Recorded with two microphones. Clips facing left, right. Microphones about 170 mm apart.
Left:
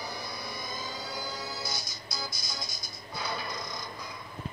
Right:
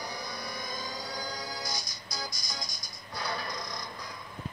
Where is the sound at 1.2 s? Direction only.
15° right (ahead or behind).